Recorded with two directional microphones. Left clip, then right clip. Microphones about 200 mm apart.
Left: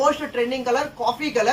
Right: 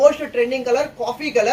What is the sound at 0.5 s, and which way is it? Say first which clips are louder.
Speech: right 3 dB; 20° left (ahead or behind).